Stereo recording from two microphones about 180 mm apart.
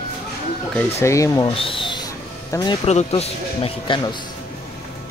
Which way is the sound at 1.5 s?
30° left (ahead or behind).